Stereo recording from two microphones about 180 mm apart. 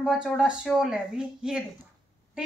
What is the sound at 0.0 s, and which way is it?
A woman's voice, 5° right (ahead or behind).